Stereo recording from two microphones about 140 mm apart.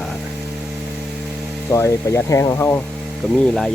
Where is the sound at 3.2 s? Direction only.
Centre (ahead or behind).